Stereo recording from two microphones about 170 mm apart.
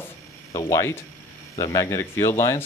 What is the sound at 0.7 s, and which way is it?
Speech, 20° left (ahead or behind).